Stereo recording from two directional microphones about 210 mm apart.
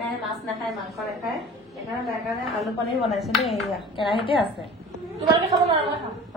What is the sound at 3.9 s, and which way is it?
Speech, 25° left (ahead or behind).